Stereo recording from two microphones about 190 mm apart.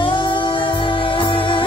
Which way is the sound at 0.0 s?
25° left (ahead or behind).